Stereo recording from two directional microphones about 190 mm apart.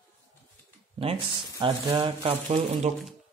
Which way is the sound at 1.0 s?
30° right (ahead or behind).